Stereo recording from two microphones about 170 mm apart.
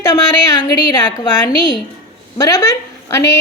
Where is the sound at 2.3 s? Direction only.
20° left (ahead or behind).